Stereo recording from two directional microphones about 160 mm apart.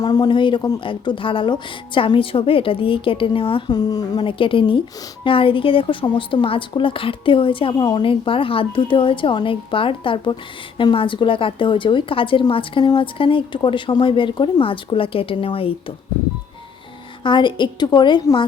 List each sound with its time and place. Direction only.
0.0 s a woman's voice: 25° left (ahead or behind)
17.2 s a woman's voice: 30° left (ahead or behind)